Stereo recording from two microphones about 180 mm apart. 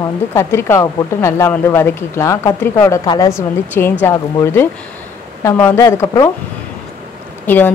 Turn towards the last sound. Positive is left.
turn(degrees=10)  # may be behind; listen again after turning